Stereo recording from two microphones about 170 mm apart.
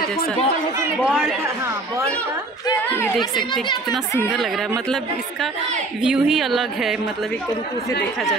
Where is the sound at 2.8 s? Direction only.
15° left (ahead or behind).